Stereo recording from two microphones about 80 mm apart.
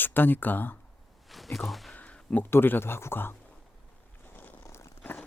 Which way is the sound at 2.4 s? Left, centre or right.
Left.